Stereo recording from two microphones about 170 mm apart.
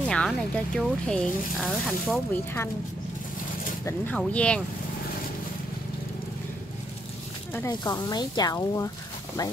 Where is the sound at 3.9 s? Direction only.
10° left (ahead or behind).